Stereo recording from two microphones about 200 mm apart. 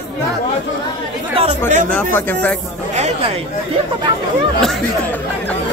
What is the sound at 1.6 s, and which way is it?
Speech, 35° right (ahead or behind).